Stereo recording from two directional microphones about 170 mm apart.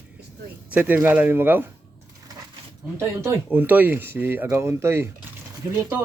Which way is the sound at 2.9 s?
15° right (ahead or behind).